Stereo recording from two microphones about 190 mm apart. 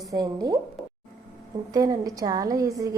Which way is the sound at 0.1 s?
20° right (ahead or behind).